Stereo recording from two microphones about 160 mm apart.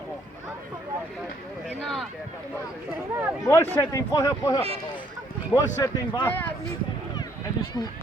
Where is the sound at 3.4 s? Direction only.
20° left (ahead or behind).